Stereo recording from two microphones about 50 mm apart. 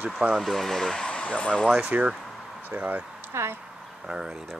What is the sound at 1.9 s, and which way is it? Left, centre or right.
Speech, right.